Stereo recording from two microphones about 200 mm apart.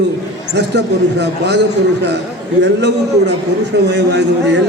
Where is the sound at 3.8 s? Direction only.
60° right (ahead or behind).